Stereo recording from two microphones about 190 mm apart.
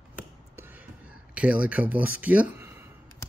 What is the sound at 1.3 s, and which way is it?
Speech, 5° right (ahead or behind).